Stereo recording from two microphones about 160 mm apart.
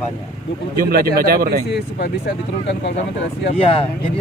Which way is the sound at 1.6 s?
90° left.